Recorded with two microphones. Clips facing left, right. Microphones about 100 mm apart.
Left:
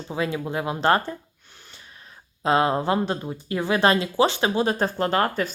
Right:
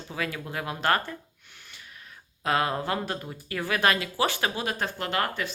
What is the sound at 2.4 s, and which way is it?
Speech, 25° left (ahead or behind).